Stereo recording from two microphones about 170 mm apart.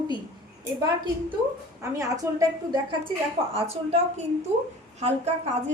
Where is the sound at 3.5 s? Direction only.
35° right (ahead or behind).